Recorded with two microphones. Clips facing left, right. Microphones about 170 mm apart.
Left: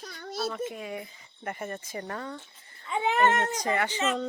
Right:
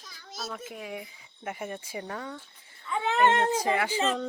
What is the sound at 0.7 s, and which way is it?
Speech, 5° right (ahead or behind).